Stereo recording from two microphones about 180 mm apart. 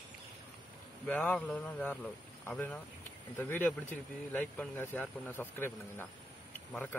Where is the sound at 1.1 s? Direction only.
10° left (ahead or behind).